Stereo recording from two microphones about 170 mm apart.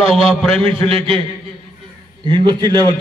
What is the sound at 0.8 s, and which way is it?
Speech, 35° right (ahead or behind).